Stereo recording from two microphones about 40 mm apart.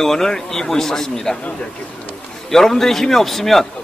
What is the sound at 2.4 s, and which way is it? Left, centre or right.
Speech, centre.